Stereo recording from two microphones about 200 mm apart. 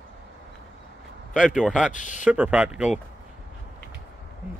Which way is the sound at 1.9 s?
40° left (ahead or behind).